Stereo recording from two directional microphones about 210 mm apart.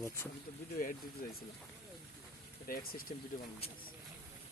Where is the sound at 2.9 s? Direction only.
45° left (ahead or behind).